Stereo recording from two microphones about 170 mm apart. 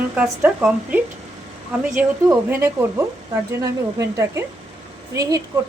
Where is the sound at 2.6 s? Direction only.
15° right (ahead or behind).